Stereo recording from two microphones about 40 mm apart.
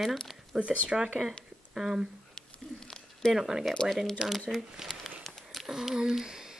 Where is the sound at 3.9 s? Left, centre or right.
Centre.